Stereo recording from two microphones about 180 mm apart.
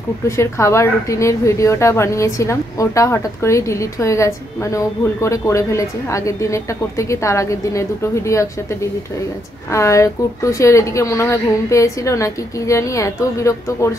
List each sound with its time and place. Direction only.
0.4 s a woman's voice: 15° left (ahead or behind)
9.7 s a woman's voice: 15° left (ahead or behind)